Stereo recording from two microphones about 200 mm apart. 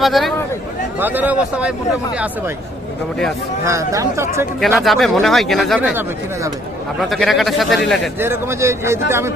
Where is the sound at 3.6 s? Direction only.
15° right (ahead or behind).